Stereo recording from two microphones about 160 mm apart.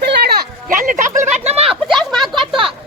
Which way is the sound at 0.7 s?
55° right (ahead or behind).